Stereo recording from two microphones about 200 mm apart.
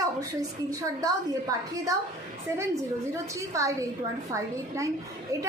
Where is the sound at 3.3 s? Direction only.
15° right (ahead or behind).